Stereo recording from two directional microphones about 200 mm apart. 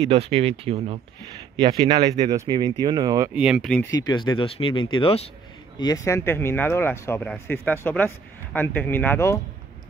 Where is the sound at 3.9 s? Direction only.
20° left (ahead or behind).